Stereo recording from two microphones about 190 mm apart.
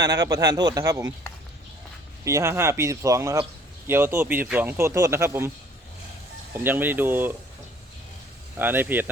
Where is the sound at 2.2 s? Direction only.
15° right (ahead or behind).